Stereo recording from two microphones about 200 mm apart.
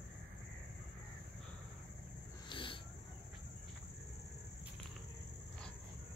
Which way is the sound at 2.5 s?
25° left (ahead or behind).